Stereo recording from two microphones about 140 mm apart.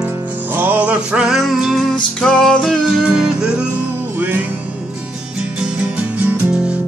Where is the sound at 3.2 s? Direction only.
5° right (ahead or behind).